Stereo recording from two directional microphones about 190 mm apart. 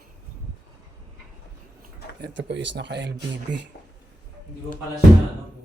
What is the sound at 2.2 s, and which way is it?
Speech, 65° right (ahead or behind).